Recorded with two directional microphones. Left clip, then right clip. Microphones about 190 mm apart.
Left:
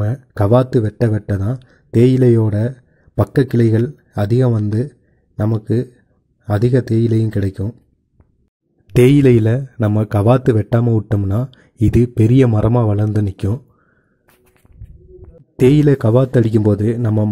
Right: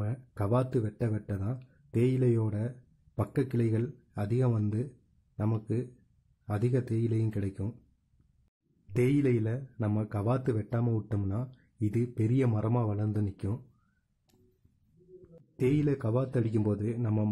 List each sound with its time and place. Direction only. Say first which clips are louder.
0.0 s speech: left 17 dB; 30° left (ahead or behind)
8.9 s a man's voice: left 17 dB; 35° left (ahead or behind)
15.5 s a man's voice: left 17 dB; 35° left (ahead or behind)